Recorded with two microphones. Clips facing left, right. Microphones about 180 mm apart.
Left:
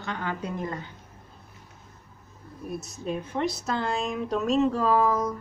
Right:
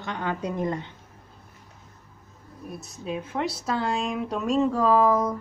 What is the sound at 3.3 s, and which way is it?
A woman's voice, 10° right (ahead or behind).